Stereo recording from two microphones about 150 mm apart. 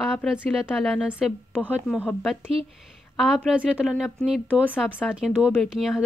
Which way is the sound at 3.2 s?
Centre (ahead or behind).